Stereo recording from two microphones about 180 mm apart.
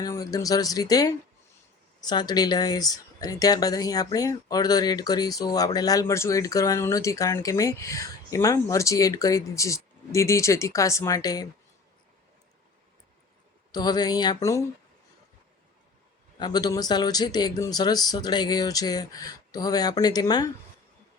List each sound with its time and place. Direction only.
0.0 s speech: 20° left (ahead or behind)
13.7 s speech: 20° left (ahead or behind)
16.4 s speech: 25° left (ahead or behind)